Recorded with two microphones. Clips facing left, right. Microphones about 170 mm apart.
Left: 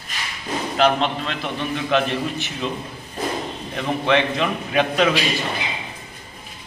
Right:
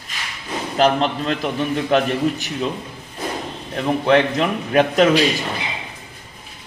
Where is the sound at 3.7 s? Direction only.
40° right (ahead or behind).